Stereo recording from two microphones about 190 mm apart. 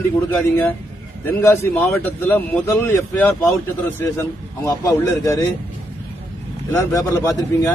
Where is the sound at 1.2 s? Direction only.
10° left (ahead or behind).